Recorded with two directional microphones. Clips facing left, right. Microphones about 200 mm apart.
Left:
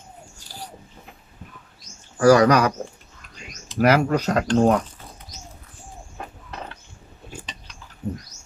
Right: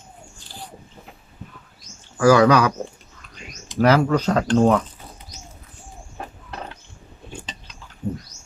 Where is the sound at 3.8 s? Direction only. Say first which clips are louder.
Right 1 dB; 10° left (ahead or behind).